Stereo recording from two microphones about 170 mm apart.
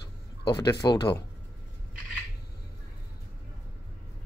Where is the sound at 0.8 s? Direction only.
25° left (ahead or behind).